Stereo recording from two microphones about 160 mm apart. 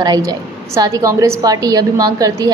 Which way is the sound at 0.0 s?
25° right (ahead or behind).